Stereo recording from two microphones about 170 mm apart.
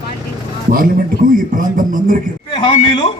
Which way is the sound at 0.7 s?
55° right (ahead or behind).